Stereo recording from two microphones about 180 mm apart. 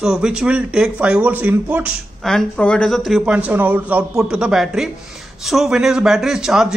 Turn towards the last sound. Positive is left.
turn(degrees=-5)  # may be behind; listen again after turning